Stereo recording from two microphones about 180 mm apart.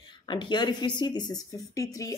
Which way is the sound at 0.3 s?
25° left (ahead or behind).